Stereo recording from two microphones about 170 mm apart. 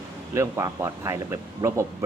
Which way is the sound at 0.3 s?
15° right (ahead or behind).